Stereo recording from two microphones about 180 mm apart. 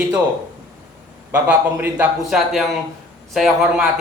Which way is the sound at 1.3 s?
10° right (ahead or behind).